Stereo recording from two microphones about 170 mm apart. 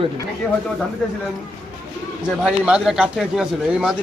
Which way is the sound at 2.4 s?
5° right (ahead or behind).